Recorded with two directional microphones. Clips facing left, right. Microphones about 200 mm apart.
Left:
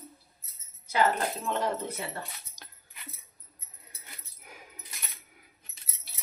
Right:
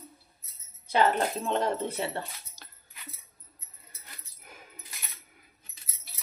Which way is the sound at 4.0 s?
10° left (ahead or behind).